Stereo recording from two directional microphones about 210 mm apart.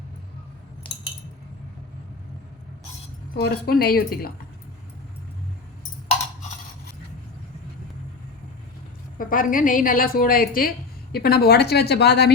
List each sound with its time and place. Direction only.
3.3 s a woman's voice: 50° left (ahead or behind)
9.1 s a woman's voice: 40° left (ahead or behind)